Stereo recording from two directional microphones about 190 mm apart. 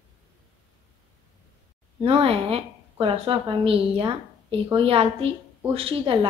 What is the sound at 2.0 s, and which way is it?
A woman's voice, 30° right (ahead or behind).